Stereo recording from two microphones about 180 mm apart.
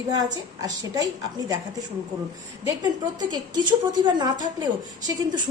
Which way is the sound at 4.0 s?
20° right (ahead or behind).